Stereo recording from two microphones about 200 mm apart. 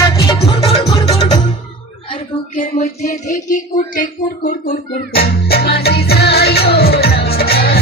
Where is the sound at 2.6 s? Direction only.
35° left (ahead or behind).